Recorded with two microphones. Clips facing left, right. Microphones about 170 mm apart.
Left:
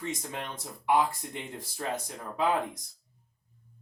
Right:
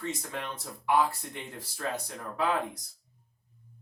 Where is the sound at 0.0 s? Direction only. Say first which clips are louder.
Even; 20° left (ahead or behind).